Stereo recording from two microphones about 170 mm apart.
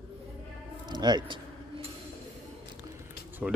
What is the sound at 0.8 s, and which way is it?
Keys jangling, 25° right (ahead or behind).